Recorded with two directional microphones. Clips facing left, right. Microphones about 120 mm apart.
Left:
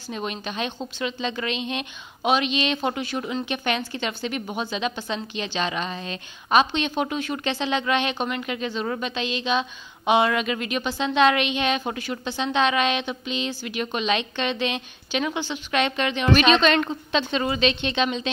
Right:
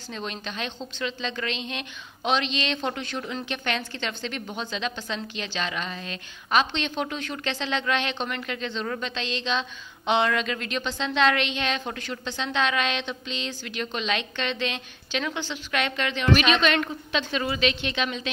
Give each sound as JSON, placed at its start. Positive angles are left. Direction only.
{"t": 0.1, "sound": "a woman's voice", "side_deg": 15}
{"t": 16.3, "sound": "a woman's voice", "side_deg": 35}